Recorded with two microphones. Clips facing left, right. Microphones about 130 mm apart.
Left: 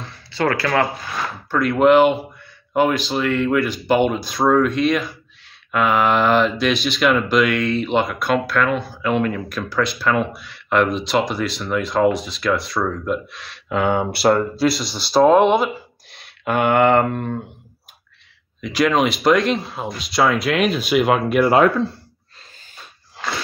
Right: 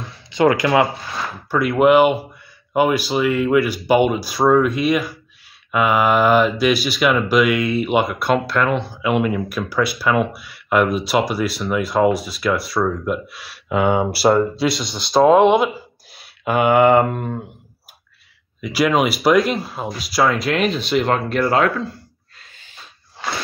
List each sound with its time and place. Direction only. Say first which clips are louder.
0.0 s a sound: right 5 dB; 15° right (ahead or behind)
1.5 s speech: even; 10° right (ahead or behind)
18.6 s speech: even; 5° right (ahead or behind); by 21.8 s 15° left (ahead or behind)